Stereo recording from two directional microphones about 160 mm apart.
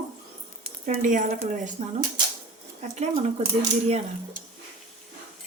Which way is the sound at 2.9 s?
45° right (ahead or behind).